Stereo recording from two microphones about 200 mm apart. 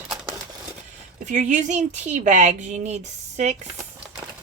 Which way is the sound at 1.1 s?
40° right (ahead or behind).